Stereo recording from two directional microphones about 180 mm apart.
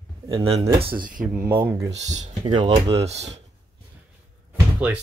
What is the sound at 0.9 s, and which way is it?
Speech, 50° right (ahead or behind).